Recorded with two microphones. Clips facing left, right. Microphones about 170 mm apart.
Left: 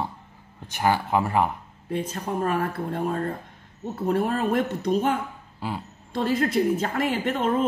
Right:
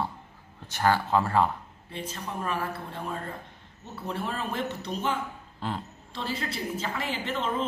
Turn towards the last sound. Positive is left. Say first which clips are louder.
# left 6 dB
turn(degrees=55)  # may be behind; listen again after turning